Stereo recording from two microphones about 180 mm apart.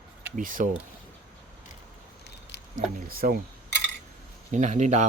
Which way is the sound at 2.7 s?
55° right (ahead or behind).